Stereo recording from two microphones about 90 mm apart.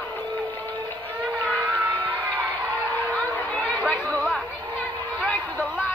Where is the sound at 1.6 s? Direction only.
20° right (ahead or behind).